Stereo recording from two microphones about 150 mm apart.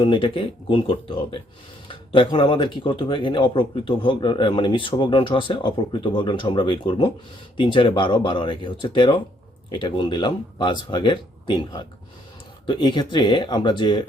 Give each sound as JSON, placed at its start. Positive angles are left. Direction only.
{"t": 0.0, "sound": "speech", "side_deg": 35}